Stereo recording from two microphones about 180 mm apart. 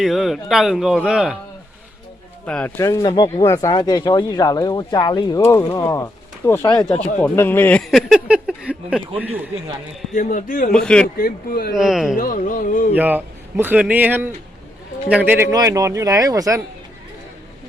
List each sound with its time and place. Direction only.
0.0 s speech: centre (ahead or behind)
2.5 s speech: 5° left (ahead or behind)
2.7 s speech: 15° left (ahead or behind); by 9.4 s 10° right (ahead or behind)
10.2 s a sound: 45° left (ahead or behind)
10.7 s speech: 5° left (ahead or behind)
11.2 s a sound: 55° left (ahead or behind)
11.7 s speech: centre (ahead or behind)
12.1 s a sound: 50° left (ahead or behind)
12.9 s speech: 10° right (ahead or behind)